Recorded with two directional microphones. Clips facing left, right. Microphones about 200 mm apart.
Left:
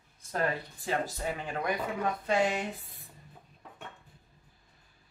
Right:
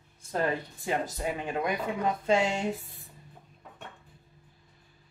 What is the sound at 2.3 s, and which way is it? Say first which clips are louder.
Speech: right 2 dB; 25° right (ahead or behind).